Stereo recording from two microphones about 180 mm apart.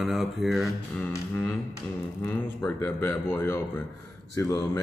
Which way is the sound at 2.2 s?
10° left (ahead or behind).